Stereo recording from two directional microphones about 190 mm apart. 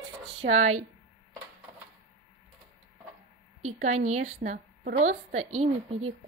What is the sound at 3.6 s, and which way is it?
A woman's voice, 40° right (ahead or behind).